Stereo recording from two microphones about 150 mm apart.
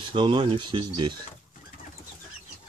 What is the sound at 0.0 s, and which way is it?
Speech, 35° right (ahead or behind).